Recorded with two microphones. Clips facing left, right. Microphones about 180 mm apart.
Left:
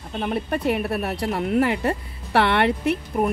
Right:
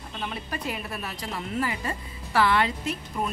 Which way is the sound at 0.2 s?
55° left (ahead or behind).